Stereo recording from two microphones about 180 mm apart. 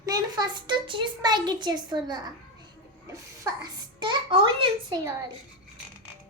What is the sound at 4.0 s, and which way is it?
A child's voice, 25° right (ahead or behind).